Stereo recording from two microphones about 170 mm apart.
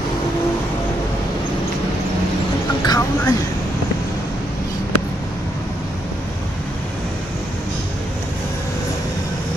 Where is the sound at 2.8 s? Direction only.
25° left (ahead or behind).